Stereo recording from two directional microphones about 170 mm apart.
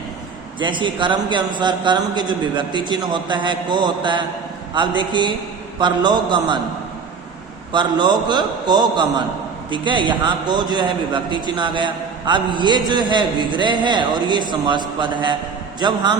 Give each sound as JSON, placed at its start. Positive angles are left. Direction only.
{"t": 0.6, "sound": "a man's voice", "side_deg": -30}
{"t": 7.7, "sound": "a man's voice", "side_deg": -25}